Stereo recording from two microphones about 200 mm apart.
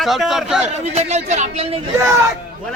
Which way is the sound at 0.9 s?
35° right (ahead or behind).